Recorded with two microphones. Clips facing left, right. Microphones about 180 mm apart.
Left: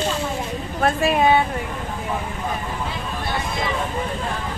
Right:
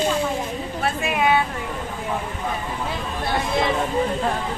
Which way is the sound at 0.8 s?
35° left (ahead or behind).